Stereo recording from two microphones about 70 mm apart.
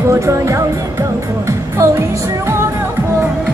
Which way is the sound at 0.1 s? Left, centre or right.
Right.